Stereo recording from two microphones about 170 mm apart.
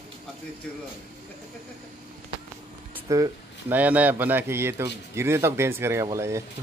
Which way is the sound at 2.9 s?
15° right (ahead or behind).